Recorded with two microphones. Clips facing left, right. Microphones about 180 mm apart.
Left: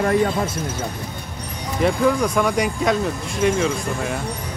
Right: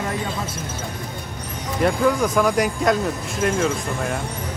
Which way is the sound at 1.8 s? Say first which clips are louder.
Left 1 dB; centre (ahead or behind).